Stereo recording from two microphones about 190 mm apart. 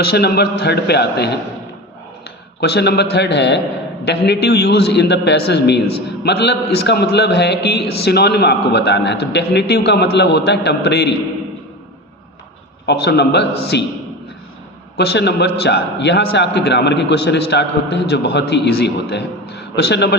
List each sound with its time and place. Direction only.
0.1 s a man's voice: 55° left (ahead or behind)
2.6 s a man's voice: 60° left (ahead or behind)
12.8 s a man's voice: 60° left (ahead or behind)
14.9 s a man's voice: 60° left (ahead or behind)